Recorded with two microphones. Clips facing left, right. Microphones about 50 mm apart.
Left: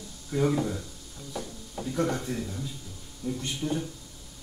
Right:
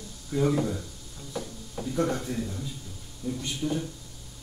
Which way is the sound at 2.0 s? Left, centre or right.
Centre.